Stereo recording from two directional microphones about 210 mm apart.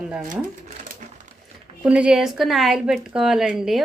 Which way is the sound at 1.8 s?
5° right (ahead or behind).